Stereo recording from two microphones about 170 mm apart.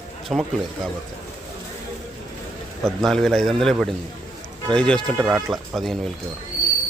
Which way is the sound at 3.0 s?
5° left (ahead or behind).